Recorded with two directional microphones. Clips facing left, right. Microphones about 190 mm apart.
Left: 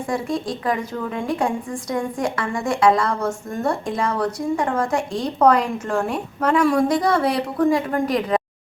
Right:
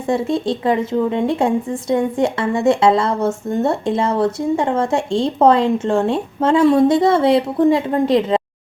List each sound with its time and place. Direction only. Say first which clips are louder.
0.1 s a woman's voice: right 7 dB; 25° right (ahead or behind)